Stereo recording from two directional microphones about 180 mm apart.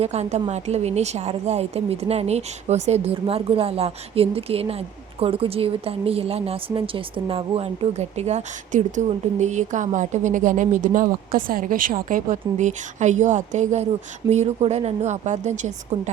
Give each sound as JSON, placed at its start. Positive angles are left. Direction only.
{"t": 0.0, "sound": "a woman's voice", "side_deg": -35}